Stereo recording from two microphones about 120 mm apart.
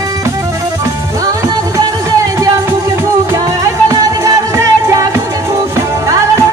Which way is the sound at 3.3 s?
30° right (ahead or behind).